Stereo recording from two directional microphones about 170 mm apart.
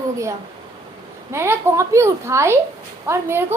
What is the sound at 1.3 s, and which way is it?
A woman's voice, 15° right (ahead or behind).